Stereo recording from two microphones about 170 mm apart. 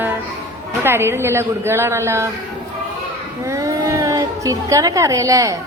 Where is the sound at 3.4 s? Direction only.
20° right (ahead or behind).